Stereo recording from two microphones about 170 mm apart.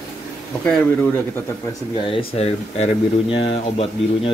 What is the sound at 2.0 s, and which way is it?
Speech, 30° left (ahead or behind).